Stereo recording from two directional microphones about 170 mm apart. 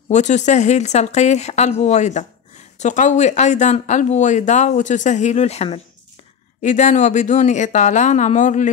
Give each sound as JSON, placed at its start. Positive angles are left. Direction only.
{"t": 0.1, "sound": "speech", "side_deg": 45}